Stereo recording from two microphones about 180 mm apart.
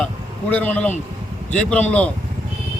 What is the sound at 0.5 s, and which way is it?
A man's voice, 10° left (ahead or behind).